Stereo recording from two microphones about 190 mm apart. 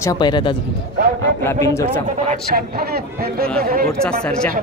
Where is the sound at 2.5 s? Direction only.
55° right (ahead or behind).